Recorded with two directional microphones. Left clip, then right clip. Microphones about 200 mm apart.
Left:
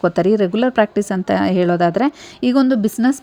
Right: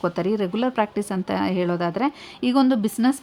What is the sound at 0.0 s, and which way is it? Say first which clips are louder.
A woman's voice: left 8 dB; 25° left (ahead or behind).